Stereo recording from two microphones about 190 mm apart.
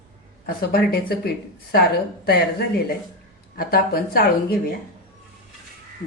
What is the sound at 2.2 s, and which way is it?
A woman's voice, 55° left (ahead or behind).